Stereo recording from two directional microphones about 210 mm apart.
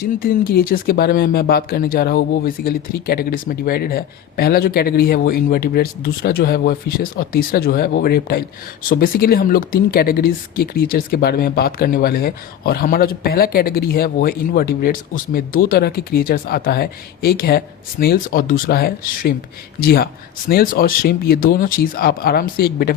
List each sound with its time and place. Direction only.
0.0 s speech: 45° left (ahead or behind)